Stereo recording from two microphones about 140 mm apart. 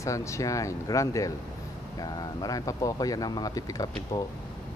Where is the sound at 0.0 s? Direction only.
20° left (ahead or behind).